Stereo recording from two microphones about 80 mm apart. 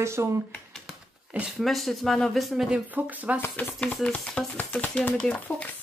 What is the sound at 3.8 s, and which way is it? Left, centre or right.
Speech, centre.